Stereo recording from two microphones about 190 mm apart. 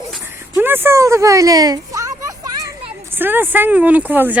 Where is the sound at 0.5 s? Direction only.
10° right (ahead or behind).